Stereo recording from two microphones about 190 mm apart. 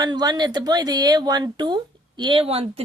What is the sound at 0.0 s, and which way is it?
Speech, 20° right (ahead or behind).